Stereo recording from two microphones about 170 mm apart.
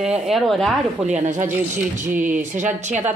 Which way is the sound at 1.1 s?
45° right (ahead or behind).